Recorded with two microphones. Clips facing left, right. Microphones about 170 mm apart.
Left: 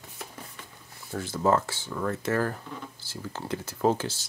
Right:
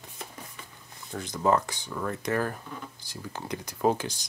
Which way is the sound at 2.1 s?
15° right (ahead or behind).